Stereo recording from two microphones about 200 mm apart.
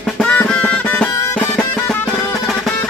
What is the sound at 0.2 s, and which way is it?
Music, 5° left (ahead or behind).